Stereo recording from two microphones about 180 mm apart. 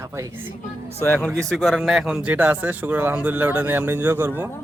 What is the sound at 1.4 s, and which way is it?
Speech, centre (ahead or behind).